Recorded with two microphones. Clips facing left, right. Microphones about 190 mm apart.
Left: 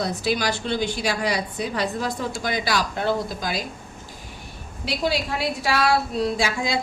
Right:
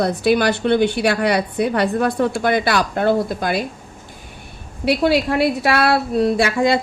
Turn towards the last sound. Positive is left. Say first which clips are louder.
# right 8 dB
turn(degrees=-60)  # may be behind; listen again after turning